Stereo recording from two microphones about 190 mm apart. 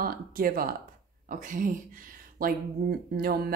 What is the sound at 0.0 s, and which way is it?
Speech, 50° right (ahead or behind).